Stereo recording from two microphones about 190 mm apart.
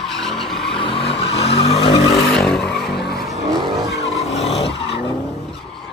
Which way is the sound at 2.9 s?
60° left (ahead or behind).